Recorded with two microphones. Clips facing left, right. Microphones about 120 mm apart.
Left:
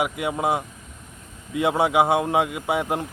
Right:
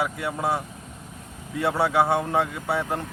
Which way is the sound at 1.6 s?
15° left (ahead or behind).